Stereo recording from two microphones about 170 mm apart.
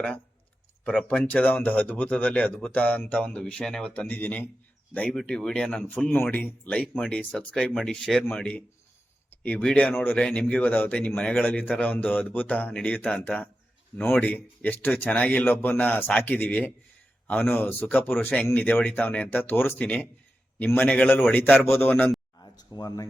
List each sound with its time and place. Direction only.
0.9 s speech: 5° left (ahead or behind)
22.5 s speech: 25° left (ahead or behind)